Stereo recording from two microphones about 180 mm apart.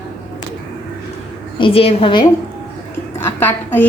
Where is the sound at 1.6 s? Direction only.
30° left (ahead or behind).